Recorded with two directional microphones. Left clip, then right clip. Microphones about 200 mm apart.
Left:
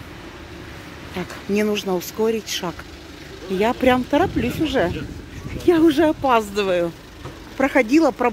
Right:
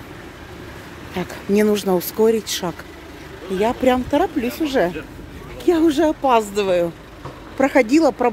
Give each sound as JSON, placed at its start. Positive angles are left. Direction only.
{"t": 1.1, "sound": "speech", "side_deg": -15}
{"t": 3.5, "sound": "speech", "side_deg": 10}